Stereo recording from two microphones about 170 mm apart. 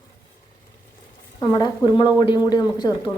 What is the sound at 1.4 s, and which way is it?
A woman's voice, 25° left (ahead or behind).